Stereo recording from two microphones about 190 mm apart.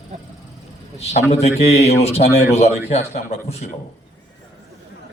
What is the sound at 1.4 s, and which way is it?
A man's voice, 35° left (ahead or behind).